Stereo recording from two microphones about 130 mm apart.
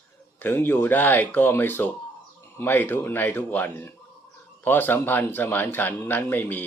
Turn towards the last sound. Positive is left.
turn(degrees=15)  # may be behind; listen again after turning